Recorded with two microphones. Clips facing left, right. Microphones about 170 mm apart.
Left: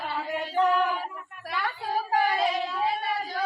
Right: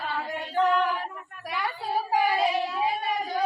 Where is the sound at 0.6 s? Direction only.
5° left (ahead or behind).